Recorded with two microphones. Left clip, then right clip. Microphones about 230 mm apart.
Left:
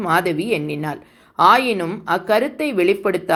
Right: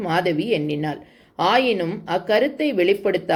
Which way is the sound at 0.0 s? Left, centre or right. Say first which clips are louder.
Left 3 dB; centre.